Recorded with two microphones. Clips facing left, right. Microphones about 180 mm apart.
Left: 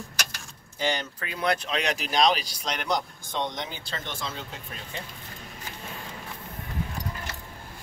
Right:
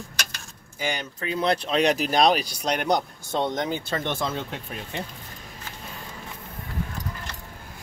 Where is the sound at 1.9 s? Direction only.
50° right (ahead or behind).